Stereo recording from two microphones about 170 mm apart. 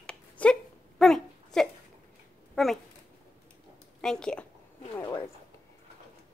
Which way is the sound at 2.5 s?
Centre (ahead or behind).